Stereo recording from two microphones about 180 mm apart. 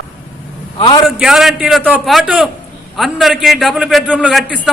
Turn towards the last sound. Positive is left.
turn(degrees=0)  # may be behind; listen again after turning